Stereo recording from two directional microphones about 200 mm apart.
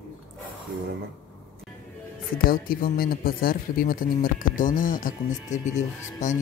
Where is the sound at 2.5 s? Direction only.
45° left (ahead or behind).